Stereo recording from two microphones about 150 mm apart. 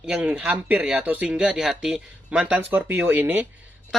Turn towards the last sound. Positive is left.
turn(degrees=-10)  # may be behind; listen again after turning